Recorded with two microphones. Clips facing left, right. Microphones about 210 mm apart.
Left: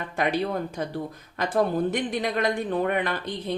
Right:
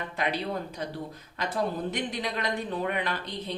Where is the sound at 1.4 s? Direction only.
50° left (ahead or behind).